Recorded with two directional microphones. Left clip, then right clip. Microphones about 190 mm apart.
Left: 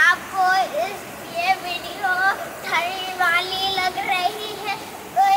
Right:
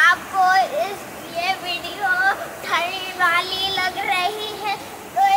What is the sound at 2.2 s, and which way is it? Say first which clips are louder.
Child singing: right 1 dB; 20° right (ahead or behind).